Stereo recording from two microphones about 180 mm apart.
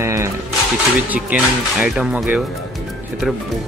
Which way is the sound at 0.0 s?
15° right (ahead or behind).